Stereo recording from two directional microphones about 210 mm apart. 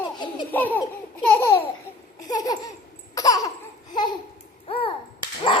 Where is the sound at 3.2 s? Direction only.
15° left (ahead or behind).